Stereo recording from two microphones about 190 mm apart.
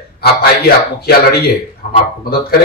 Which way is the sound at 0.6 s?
55° left (ahead or behind).